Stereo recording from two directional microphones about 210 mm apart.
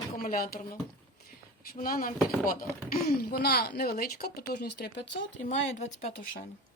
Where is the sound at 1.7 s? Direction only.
45° left (ahead or behind).